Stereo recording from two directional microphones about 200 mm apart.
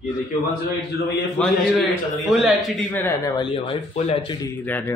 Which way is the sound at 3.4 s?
25° left (ahead or behind).